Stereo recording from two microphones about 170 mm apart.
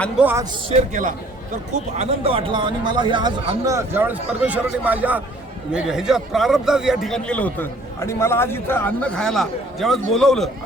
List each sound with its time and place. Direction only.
0.2 s speech: 10° right (ahead or behind)
1.7 s a man's voice: 40° right (ahead or behind); by 10.5 s centre (ahead or behind)